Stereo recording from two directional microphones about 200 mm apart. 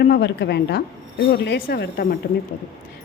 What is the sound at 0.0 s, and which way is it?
A woman's voice, 55° left (ahead or behind).